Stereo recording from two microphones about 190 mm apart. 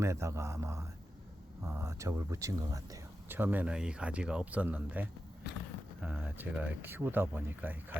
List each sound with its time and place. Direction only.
0.0 s speech: 15° right (ahead or behind)